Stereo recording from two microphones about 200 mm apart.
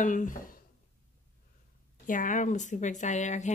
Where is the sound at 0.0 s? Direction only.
40° left (ahead or behind).